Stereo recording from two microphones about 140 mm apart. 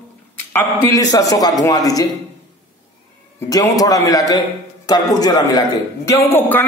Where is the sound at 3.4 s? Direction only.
25° left (ahead or behind).